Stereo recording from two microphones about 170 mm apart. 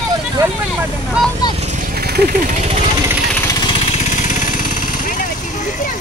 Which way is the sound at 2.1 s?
65° right (ahead or behind).